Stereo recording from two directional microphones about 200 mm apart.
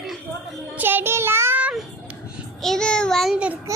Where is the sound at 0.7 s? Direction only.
10° right (ahead or behind).